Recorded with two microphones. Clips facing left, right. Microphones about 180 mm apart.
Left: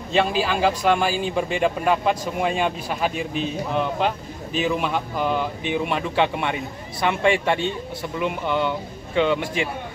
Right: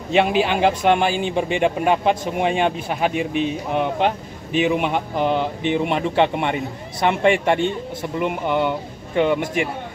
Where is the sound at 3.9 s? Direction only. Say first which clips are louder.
Right 3 dB; 60° right (ahead or behind).